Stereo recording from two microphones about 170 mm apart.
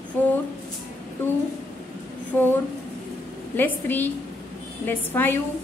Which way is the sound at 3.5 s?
10° left (ahead or behind).